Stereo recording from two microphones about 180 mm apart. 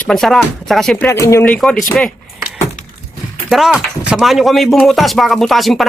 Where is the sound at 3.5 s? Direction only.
Centre (ahead or behind).